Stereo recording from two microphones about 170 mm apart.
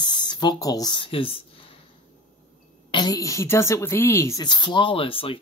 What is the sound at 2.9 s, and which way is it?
A woman's voice, 25° left (ahead or behind).